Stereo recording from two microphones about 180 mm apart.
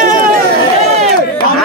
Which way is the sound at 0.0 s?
50° right (ahead or behind).